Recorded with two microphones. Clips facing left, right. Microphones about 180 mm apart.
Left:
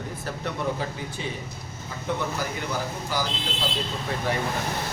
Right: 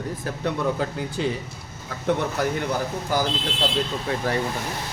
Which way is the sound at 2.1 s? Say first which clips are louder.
Right 6 dB; 70° right (ahead or behind).